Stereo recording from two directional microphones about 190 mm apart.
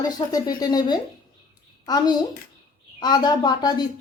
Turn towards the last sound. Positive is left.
turn(degrees=20)  # may be behind; listen again after turning